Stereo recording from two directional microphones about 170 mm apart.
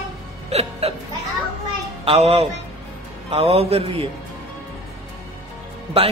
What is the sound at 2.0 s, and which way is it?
A man's voice, 35° right (ahead or behind).